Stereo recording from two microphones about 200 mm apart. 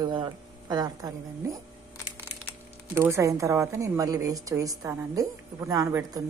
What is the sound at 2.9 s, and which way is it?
A woman's voice, 10° right (ahead or behind).